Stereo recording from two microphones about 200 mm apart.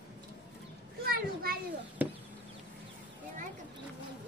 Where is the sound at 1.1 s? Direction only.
50° right (ahead or behind).